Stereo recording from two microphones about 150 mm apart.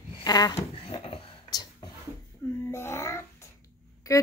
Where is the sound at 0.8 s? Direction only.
40° left (ahead or behind).